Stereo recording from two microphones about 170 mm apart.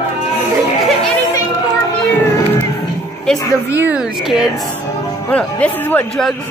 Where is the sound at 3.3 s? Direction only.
5° left (ahead or behind).